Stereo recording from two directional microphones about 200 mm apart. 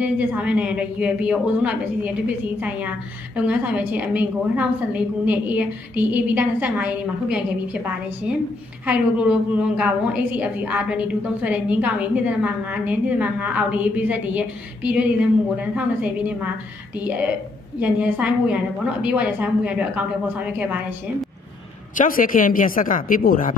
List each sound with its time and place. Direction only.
0.0 s a woman's voice: 10° right (ahead or behind)
3.3 s a woman's voice: 5° right (ahead or behind)
17.7 s a woman's voice: 10° right (ahead or behind)
21.9 s speech: 45° left (ahead or behind)